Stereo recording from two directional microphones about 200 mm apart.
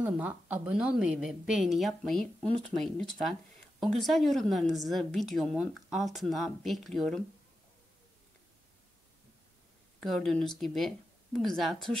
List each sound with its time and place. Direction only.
0.0 s a woman's voice: 10° right (ahead or behind)
9.9 s speech: centre (ahead or behind)